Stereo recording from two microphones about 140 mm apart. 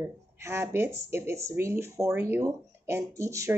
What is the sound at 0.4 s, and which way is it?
Speech, 15° right (ahead or behind).